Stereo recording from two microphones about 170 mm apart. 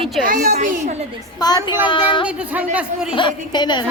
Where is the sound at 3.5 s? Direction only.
25° left (ahead or behind).